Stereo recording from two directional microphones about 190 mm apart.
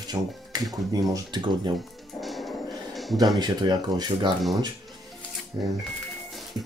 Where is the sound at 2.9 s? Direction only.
Centre (ahead or behind).